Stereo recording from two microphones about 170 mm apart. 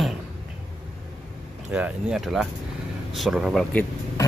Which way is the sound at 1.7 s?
5° right (ahead or behind).